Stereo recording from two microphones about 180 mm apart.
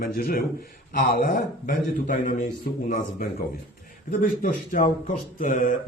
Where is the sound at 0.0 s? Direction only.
55° left (ahead or behind).